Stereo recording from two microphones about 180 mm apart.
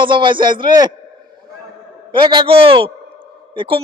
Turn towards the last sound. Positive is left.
turn(degrees=-30)  # may be behind; listen again after turning